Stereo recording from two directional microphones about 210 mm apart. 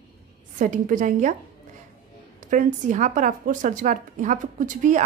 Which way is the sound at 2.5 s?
35° right (ahead or behind).